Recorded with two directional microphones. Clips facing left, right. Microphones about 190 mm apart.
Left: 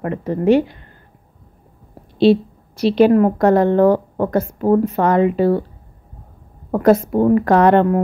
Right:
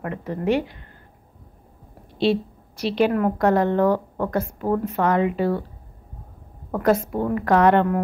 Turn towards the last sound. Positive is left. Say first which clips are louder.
# left 4 dB
turn(degrees=35)  # may be behind; listen again after turning